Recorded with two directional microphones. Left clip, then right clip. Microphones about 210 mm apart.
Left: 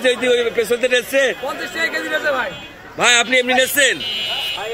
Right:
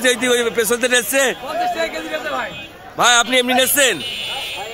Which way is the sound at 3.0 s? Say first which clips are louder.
Even; 30° right (ahead or behind).